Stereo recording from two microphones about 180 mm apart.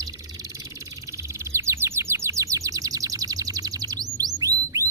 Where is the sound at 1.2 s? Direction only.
15° right (ahead or behind).